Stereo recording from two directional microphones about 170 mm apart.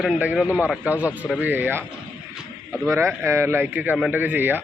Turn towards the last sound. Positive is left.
turn(degrees=-10)  # may be behind; listen again after turning